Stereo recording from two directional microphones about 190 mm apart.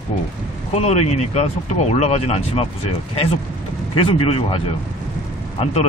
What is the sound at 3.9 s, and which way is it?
Speech, 30° left (ahead or behind).